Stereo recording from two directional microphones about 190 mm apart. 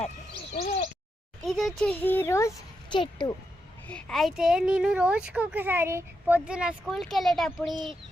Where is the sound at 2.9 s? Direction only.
25° left (ahead or behind).